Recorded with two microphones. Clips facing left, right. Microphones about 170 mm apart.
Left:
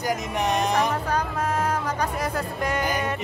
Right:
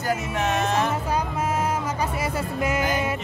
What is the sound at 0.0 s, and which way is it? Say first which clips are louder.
Music: even; 15° left (ahead or behind).